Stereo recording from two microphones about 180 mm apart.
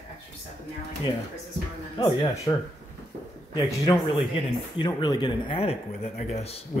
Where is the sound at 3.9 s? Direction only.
30° left (ahead or behind).